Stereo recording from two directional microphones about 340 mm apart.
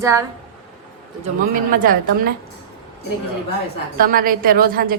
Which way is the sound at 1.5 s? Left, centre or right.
Right.